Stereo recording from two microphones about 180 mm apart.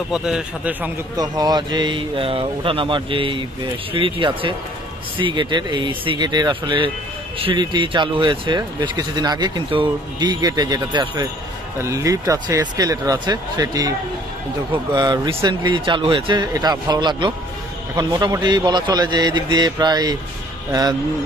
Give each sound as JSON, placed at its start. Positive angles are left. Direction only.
{"t": 0.1, "sound": "a man's voice", "side_deg": -5}
{"t": 1.1, "sound": "speech", "side_deg": -20}
{"t": 15.0, "sound": "speech", "side_deg": -25}